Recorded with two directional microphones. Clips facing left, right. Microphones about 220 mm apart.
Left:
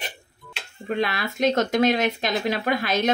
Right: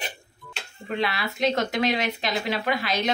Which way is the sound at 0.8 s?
45° left (ahead or behind).